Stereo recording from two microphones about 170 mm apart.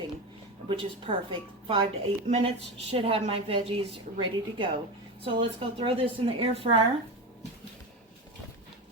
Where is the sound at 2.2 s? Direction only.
40° right (ahead or behind).